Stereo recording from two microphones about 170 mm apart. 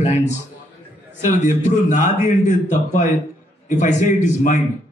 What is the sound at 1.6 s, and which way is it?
A man's voice, 45° left (ahead or behind).